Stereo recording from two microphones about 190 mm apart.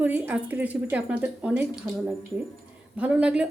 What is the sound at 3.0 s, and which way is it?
Speech, 5° right (ahead or behind).